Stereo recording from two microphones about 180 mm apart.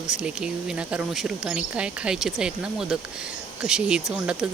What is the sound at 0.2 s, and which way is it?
Speech, 5° right (ahead or behind).